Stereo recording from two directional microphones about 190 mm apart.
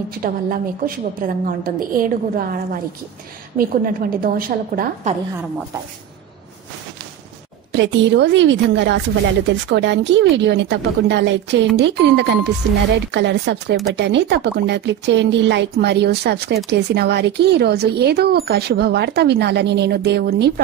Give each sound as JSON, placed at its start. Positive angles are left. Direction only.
{"t": 0.2, "sound": "a woman's voice", "side_deg": -50}
{"t": 7.7, "sound": "a woman's voice", "side_deg": -70}